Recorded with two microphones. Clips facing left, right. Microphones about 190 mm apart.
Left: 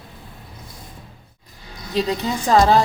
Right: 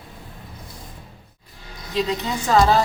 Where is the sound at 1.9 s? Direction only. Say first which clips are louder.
Left 2 dB; 35° left (ahead or behind).